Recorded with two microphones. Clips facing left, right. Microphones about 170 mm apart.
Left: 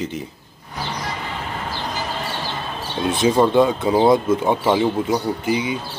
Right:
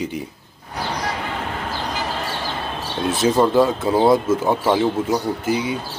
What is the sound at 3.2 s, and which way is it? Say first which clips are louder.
Speech: left 1 dB; 5° right (ahead or behind).